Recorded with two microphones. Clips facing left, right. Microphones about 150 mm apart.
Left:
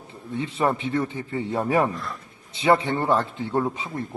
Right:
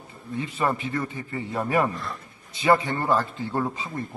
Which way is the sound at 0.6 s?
Centre (ahead or behind).